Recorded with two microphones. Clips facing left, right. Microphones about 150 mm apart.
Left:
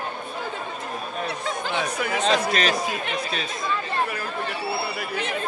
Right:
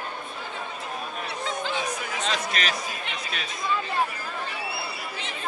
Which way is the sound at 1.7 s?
65° left (ahead or behind).